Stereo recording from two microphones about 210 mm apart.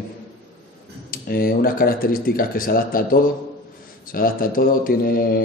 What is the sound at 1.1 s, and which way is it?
A man's voice, 45° left (ahead or behind).